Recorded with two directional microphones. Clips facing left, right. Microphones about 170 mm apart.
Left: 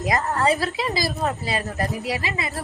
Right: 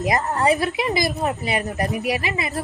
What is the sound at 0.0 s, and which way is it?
Speech, 20° right (ahead or behind).